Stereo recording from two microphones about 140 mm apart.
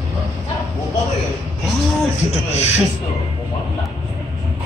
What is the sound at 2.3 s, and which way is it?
Speech, 50° left (ahead or behind).